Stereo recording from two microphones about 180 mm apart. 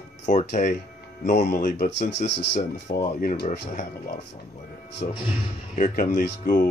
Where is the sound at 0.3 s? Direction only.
40° left (ahead or behind).